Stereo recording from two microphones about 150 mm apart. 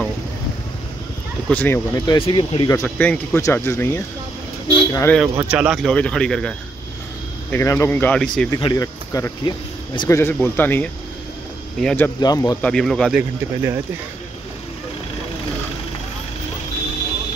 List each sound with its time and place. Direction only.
1.5 s speech: 15° left (ahead or behind)
2.0 s speech: 30° left (ahead or behind)
2.7 s speech: 15° left (ahead or behind)
5.3 s speech: 15° right (ahead or behind); by 6.5 s 5° left (ahead or behind)
7.5 s speech: 15° left (ahead or behind)
8.5 s speech: 35° left (ahead or behind)
8.8 s speech: 20° left (ahead or behind)
9.4 s speech: 30° left (ahead or behind)
10.0 s speech: 15° left (ahead or behind)
12.2 s speech: 25° left (ahead or behind)
12.6 s speech: 5° left (ahead or behind)